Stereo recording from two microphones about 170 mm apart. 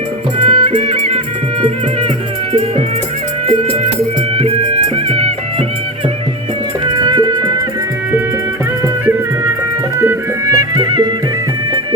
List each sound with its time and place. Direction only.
0.4 s music: 30° right (ahead or behind)
2.5 s music: 35° right (ahead or behind)
5.0 s music: 35° right (ahead or behind)
6.8 s music: 25° right (ahead or behind)
10.0 s music: 15° right (ahead or behind)